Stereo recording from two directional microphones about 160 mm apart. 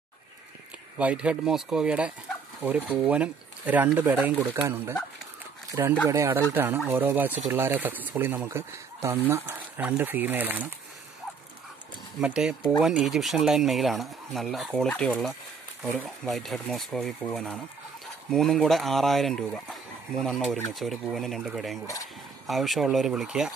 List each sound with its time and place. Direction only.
0.9 s speech: 5° right (ahead or behind)
12.2 s speech: 5° right (ahead or behind)
18.3 s speech: 5° left (ahead or behind)